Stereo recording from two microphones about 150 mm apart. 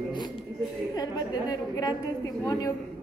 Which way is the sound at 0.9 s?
25° left (ahead or behind).